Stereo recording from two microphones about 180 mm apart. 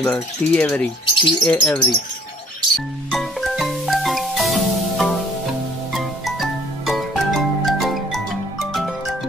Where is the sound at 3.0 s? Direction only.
Centre (ahead or behind).